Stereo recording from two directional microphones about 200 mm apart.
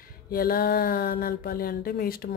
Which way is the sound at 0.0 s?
45° left (ahead or behind).